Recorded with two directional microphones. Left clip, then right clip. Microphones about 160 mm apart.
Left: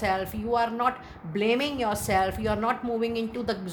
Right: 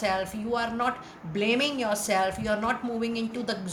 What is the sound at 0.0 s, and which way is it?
A woman's voice, 50° left (ahead or behind).